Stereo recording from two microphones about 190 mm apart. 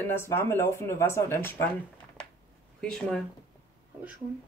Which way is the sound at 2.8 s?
5° left (ahead or behind).